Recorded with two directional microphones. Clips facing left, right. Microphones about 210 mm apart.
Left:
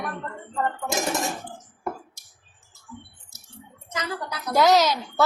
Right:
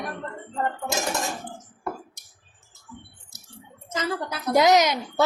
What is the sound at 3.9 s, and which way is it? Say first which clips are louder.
A woman's voice: right 3 dB; 25° right (ahead or behind).